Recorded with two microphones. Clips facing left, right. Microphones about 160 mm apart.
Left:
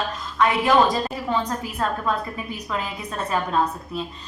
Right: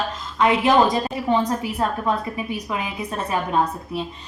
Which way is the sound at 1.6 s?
20° right (ahead or behind).